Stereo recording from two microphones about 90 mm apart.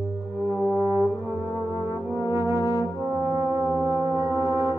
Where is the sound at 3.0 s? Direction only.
35° right (ahead or behind).